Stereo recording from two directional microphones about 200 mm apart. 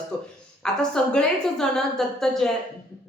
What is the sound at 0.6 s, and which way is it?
A woman's voice, 5° left (ahead or behind).